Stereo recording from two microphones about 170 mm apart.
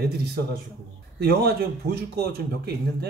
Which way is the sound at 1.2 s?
70° right (ahead or behind).